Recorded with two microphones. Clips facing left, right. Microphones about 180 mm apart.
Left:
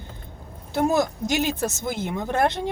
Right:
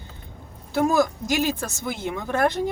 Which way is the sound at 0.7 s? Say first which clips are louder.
Right 1 dB; 25° left (ahead or behind).